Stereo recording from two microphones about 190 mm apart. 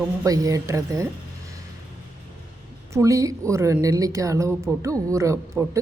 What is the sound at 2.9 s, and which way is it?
A woman's voice, 15° right (ahead or behind).